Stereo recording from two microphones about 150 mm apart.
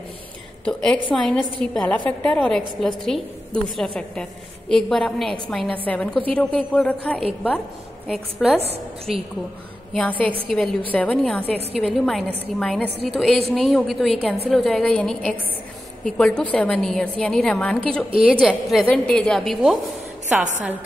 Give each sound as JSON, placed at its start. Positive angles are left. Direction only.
{"t": 0.7, "sound": "a woman's voice", "side_deg": 5}
{"t": 8.5, "sound": "a woman's voice", "side_deg": -45}
{"t": 9.9, "sound": "a woman's voice", "side_deg": 10}